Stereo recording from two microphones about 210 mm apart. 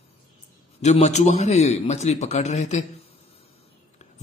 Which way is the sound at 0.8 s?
30° left (ahead or behind).